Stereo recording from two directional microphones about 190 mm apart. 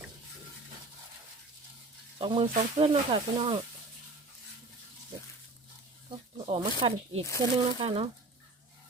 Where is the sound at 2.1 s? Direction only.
30° right (ahead or behind).